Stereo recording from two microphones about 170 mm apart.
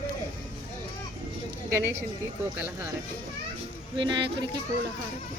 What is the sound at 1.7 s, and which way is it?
Speech, 15° right (ahead or behind).